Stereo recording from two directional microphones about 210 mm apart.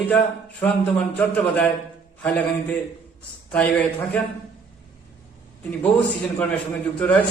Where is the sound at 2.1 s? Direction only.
5° left (ahead or behind).